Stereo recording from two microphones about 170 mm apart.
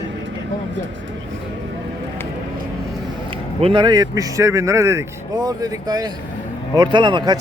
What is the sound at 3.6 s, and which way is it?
Speech, 25° right (ahead or behind).